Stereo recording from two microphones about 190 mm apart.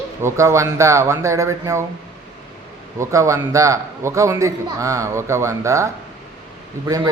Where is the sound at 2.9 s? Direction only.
15° right (ahead or behind).